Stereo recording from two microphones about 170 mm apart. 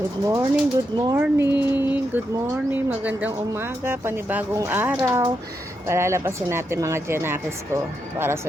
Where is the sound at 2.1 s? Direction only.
10° right (ahead or behind).